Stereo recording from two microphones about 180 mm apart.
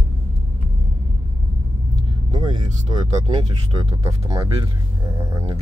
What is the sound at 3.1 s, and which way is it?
Speech, 35° right (ahead or behind).